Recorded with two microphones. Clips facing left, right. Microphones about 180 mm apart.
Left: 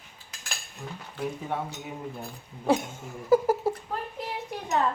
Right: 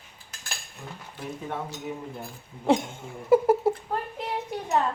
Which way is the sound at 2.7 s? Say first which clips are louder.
Right 2 dB; 25° right (ahead or behind).